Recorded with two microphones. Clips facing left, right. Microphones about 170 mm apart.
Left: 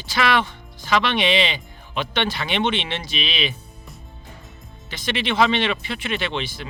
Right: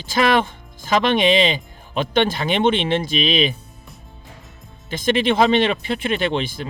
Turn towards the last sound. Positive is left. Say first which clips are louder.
# right 5 dB
turn(degrees=-50)  # may be behind; listen again after turning